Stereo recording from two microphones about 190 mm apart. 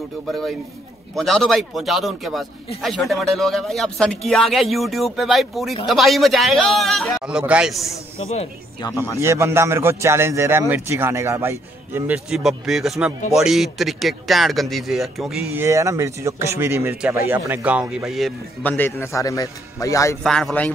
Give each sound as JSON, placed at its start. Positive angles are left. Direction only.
{"t": 0.3, "sound": "speech", "side_deg": 0}
{"t": 8.8, "sound": "speech", "side_deg": 15}
{"t": 9.2, "sound": "speech", "side_deg": -15}
{"t": 15.6, "sound": "speech", "side_deg": -15}
{"t": 20.2, "sound": "speech", "side_deg": 5}